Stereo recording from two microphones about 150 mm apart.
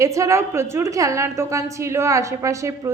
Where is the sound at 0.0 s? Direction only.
20° right (ahead or behind).